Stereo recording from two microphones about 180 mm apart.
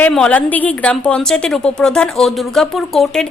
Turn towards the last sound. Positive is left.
turn(degrees=0)  # may be behind; listen again after turning